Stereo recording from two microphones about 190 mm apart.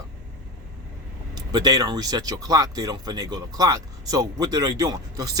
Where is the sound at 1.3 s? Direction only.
20° right (ahead or behind).